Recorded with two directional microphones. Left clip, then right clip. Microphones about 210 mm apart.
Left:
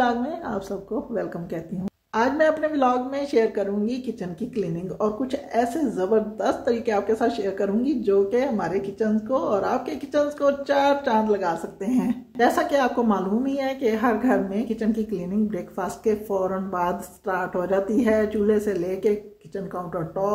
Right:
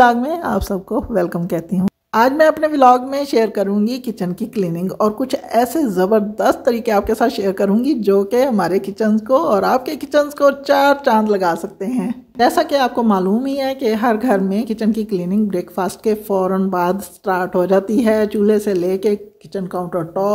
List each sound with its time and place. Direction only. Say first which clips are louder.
0.0 s a woman's voice: right 11 dB; 55° right (ahead or behind)
11.8 s a woman's voice: right 3 dB; 25° right (ahead or behind)
12.4 s a woman's voice: right 6 dB; 50° right (ahead or behind)